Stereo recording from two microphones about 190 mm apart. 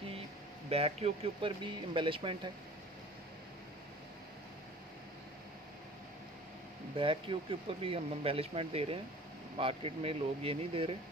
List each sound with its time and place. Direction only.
0.7 s speech: 30° right (ahead or behind)
7.0 s speech: 25° right (ahead or behind)